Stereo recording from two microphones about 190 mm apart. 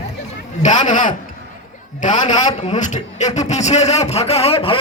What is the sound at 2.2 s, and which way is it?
Speech, 20° left (ahead or behind).